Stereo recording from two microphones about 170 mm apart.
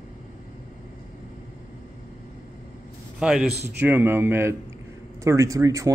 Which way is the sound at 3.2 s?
5° right (ahead or behind).